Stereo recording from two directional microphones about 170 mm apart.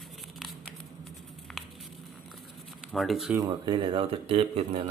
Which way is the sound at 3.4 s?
25° right (ahead or behind).